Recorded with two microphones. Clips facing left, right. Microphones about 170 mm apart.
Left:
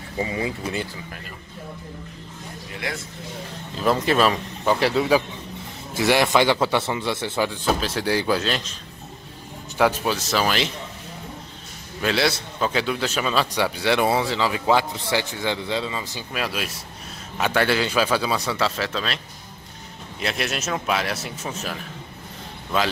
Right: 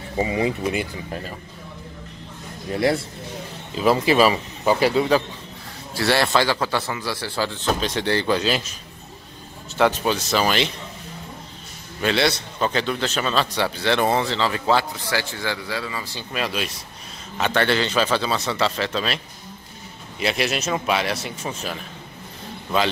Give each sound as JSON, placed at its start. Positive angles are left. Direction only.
{"t": 0.2, "sound": "speech", "side_deg": -25}
{"t": 2.7, "sound": "speech", "side_deg": -35}
{"t": 3.7, "sound": "speech", "side_deg": -5}
{"t": 5.9, "sound": "a man's voice", "side_deg": 15}
{"t": 9.8, "sound": "speech", "side_deg": 5}
{"t": 12.0, "sound": "a man's voice", "side_deg": 0}
{"t": 15.0, "sound": "speech", "side_deg": 20}
{"t": 16.3, "sound": "a man's voice", "side_deg": 5}
{"t": 20.2, "sound": "speech", "side_deg": 0}